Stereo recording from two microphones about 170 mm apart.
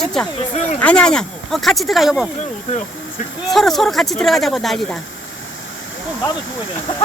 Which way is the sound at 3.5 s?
Centre (ahead or behind).